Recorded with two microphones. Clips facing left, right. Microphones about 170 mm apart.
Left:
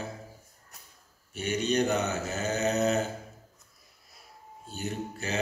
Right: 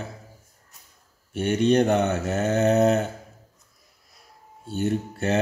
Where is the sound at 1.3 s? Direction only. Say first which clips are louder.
Right 8 dB; 55° right (ahead or behind).